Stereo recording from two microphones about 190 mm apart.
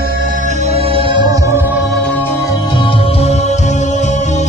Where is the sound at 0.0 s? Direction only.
50° right (ahead or behind); by 2.1 s centre (ahead or behind).